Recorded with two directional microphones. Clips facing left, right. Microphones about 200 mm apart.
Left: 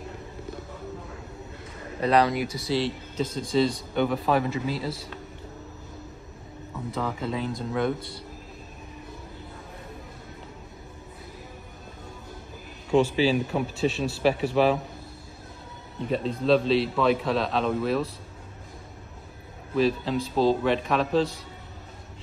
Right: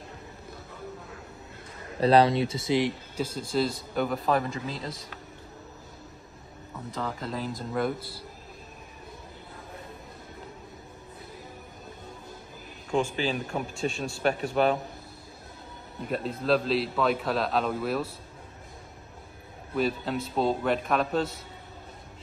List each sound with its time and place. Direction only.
2.0 s speech: 30° right (ahead or behind)
3.3 s a man's voice: 5° right (ahead or behind)
7.0 s a man's voice: centre (ahead or behind)
12.9 s a man's voice: 5° left (ahead or behind)
16.1 s a man's voice: 5° right (ahead or behind)
19.7 s a man's voice: centre (ahead or behind)